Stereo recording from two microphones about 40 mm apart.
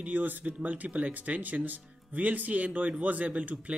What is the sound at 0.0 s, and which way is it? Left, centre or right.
Speech, right.